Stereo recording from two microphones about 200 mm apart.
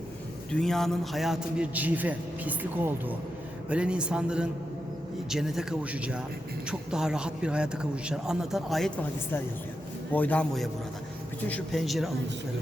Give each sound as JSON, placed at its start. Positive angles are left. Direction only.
{"t": 0.5, "sound": "a man's voice", "side_deg": 0}
{"t": 10.1, "sound": "a man's voice", "side_deg": 10}